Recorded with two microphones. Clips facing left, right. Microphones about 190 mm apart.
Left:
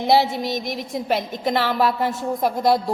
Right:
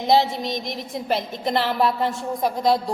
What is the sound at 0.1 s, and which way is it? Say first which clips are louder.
A woman's voice: left 1 dB; 5° left (ahead or behind).